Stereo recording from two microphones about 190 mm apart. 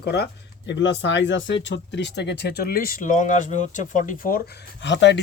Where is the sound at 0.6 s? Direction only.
70° left (ahead or behind); by 4.4 s 45° left (ahead or behind).